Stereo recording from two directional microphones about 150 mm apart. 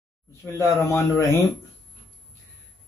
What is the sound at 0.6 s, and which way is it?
Speech, 15° left (ahead or behind).